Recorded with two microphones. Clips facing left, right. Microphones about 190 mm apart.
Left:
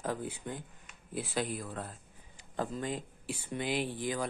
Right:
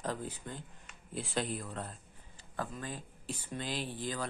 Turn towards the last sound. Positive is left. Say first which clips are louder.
# left 4 dB
turn(degrees=15)  # may be behind; listen again after turning